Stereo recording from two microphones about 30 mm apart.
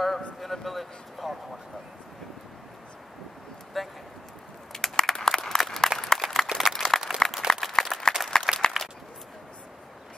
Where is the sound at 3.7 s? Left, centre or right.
Centre.